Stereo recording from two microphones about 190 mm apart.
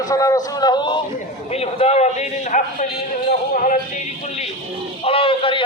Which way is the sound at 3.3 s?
45° left (ahead or behind).